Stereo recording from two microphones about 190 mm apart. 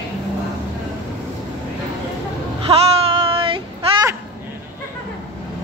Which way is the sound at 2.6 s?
30° right (ahead or behind).